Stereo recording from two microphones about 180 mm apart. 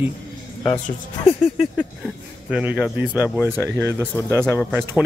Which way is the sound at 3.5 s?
15° right (ahead or behind).